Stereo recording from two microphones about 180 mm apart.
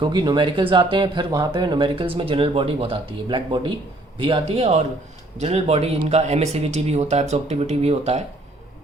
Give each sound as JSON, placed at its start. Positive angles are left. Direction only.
{"t": 0.0, "sound": "speech", "side_deg": -25}